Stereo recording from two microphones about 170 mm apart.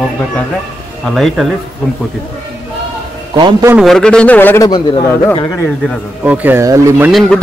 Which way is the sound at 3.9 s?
5° left (ahead or behind).